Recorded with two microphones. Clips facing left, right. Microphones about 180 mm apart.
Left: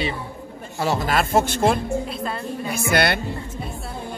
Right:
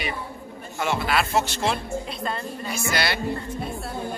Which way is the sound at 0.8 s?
40° left (ahead or behind).